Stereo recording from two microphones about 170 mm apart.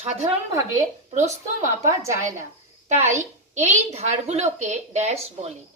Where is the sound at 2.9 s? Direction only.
45° right (ahead or behind).